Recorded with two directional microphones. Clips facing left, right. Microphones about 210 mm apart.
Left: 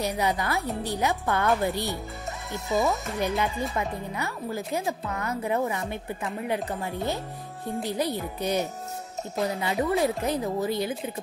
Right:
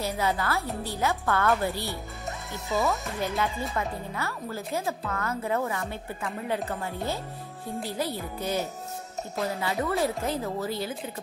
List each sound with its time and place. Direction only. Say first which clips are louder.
0.0 s speech: left 1 dB; 15° left (ahead or behind)